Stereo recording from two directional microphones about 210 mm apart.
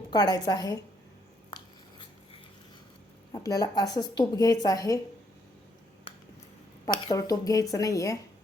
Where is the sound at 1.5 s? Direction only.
25° left (ahead or behind).